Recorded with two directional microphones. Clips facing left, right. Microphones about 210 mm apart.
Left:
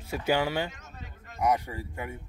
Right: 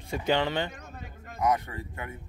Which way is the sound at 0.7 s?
55° right (ahead or behind).